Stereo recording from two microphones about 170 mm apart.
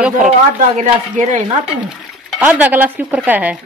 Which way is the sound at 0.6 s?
45° right (ahead or behind).